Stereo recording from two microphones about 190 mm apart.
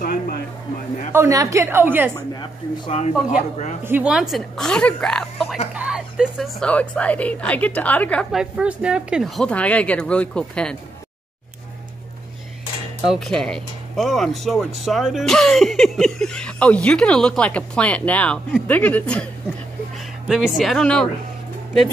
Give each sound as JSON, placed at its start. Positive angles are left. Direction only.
{"t": 0.0, "sound": "speech", "side_deg": 50}
{"t": 1.1, "sound": "a woman's voice", "side_deg": -15}
{"t": 2.1, "sound": "speech", "side_deg": 25}
{"t": 3.8, "sound": "a woman's voice", "side_deg": -10}
{"t": 13.1, "sound": "a woman's voice", "side_deg": 0}
{"t": 20.2, "sound": "a woman's voice", "side_deg": 0}